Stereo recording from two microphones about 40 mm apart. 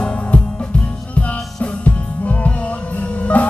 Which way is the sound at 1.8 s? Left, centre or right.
Left.